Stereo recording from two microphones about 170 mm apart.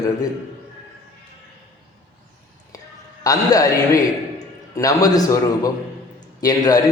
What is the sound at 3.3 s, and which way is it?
A man's voice, 20° left (ahead or behind).